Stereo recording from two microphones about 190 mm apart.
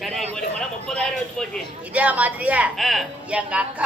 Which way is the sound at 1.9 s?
5° right (ahead or behind).